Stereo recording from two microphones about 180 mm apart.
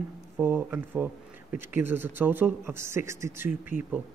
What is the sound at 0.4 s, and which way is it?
Speech, 10° right (ahead or behind).